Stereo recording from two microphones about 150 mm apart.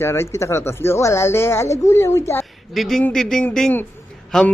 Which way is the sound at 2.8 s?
Centre (ahead or behind).